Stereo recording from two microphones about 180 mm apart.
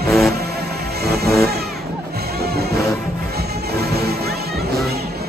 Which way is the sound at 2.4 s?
60° right (ahead or behind).